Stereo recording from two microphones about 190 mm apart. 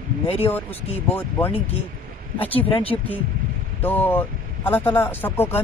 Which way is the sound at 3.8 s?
10° left (ahead or behind).